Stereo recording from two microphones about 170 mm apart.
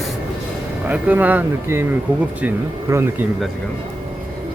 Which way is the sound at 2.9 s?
15° right (ahead or behind).